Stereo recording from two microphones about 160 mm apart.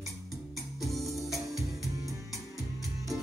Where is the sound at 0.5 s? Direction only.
Centre (ahead or behind).